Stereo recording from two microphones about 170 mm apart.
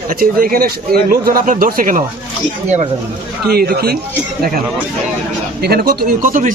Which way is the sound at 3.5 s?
65° right (ahead or behind).